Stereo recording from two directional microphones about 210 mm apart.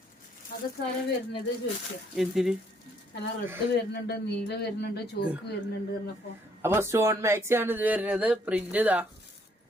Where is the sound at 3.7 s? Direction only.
55° left (ahead or behind).